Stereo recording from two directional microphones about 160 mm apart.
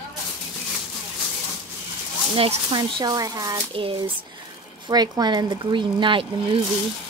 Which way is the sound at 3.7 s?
35° right (ahead or behind).